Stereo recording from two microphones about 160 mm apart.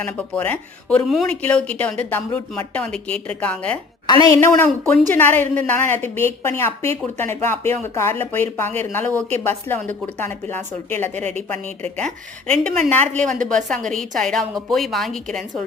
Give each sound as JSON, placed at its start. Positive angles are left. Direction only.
{"t": 0.0, "sound": "speech", "side_deg": 10}
{"t": 4.0, "sound": "a woman's voice", "side_deg": 25}